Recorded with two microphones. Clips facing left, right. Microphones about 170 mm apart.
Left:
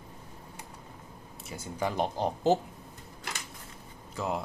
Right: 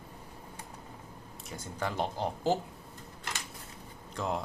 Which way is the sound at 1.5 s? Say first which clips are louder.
Left 3 dB; 10° left (ahead or behind).